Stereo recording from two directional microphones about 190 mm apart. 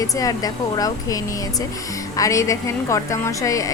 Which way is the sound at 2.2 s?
15° left (ahead or behind).